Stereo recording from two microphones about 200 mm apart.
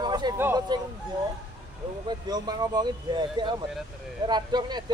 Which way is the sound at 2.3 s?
20° right (ahead or behind).